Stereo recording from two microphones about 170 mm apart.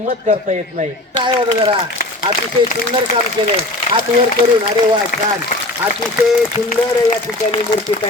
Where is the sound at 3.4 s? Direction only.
30° right (ahead or behind).